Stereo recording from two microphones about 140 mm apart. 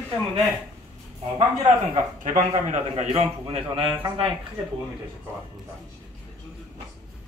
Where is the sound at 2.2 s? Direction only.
65° right (ahead or behind).